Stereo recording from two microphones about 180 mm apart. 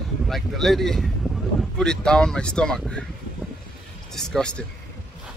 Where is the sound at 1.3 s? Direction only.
20° left (ahead or behind).